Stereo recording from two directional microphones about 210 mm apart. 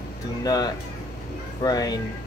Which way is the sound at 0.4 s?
20° left (ahead or behind).